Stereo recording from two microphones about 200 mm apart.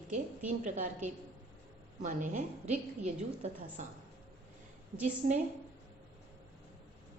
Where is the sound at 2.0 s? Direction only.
40° right (ahead or behind).